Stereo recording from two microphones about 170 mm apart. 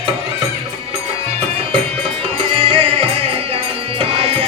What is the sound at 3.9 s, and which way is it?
Music, 35° right (ahead or behind).